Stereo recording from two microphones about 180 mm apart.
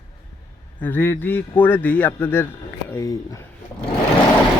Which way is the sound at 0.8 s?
10° left (ahead or behind).